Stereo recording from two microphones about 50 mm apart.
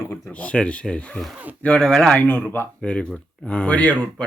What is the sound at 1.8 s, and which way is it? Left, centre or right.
Speech, centre.